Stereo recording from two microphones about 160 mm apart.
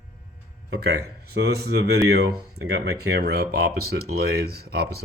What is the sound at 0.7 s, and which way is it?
Speech, 90° right.